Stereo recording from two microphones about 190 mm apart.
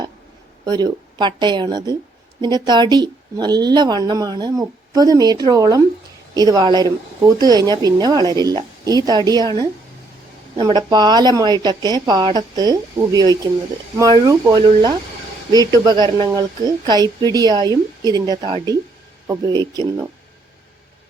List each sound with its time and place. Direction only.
0.6 s a woman's voice: 20° right (ahead or behind)
10.6 s a woman's voice: 20° right (ahead or behind)